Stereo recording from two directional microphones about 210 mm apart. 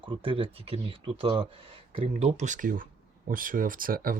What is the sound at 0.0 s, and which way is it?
Speech, 25° right (ahead or behind).